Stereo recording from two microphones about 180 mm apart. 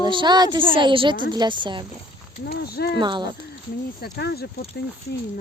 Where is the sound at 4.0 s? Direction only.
60° left (ahead or behind).